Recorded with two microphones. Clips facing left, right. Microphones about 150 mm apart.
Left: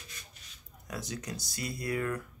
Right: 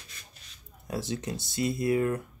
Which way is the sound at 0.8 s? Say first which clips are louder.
Right 6 dB; 25° right (ahead or behind).